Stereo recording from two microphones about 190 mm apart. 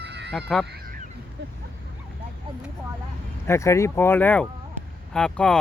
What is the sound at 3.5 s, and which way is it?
Speech, 15° left (ahead or behind).